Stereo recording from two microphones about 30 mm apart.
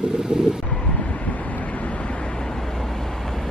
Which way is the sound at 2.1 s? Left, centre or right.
Left.